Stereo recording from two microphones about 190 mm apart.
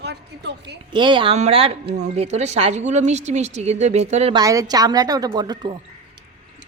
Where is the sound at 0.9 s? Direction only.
25° right (ahead or behind).